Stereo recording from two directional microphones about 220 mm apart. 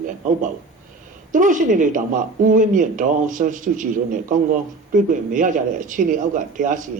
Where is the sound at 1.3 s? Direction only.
35° right (ahead or behind).